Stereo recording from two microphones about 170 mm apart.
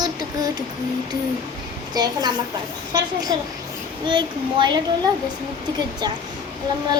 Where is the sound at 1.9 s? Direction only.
25° right (ahead or behind).